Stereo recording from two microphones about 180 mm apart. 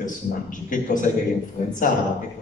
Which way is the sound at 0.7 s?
45° left (ahead or behind).